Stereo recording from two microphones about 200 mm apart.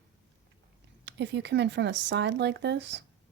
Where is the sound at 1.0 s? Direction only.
60° right (ahead or behind).